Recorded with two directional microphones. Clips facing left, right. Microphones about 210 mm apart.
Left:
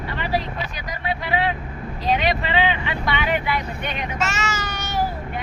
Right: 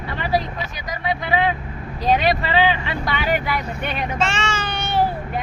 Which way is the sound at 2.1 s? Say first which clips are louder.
Right 3 dB; 40° right (ahead or behind).